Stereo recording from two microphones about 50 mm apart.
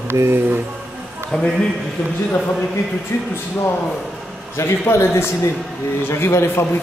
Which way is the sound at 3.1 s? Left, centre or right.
Left.